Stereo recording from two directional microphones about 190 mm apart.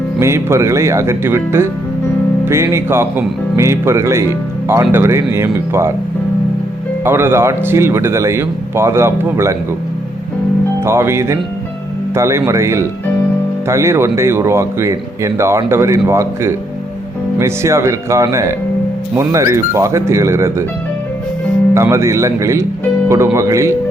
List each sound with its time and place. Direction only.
0.2 s speech: 15° right (ahead or behind)
7.0 s speech: 10° right (ahead or behind)
10.8 s speech: 15° right (ahead or behind)
21.8 s speech: 15° right (ahead or behind)